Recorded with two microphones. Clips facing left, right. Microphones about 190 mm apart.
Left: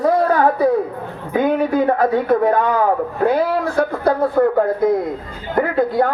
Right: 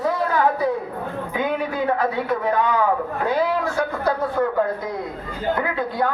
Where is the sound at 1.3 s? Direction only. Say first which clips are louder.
Left 8 dB; 45° left (ahead or behind).